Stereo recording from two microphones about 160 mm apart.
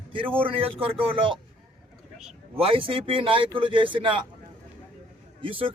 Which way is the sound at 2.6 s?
35° right (ahead or behind).